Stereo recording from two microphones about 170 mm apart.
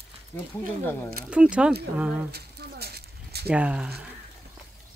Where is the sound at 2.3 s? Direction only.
70° right (ahead or behind).